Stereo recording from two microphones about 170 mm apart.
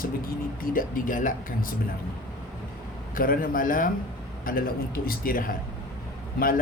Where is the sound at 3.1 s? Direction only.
55° left (ahead or behind).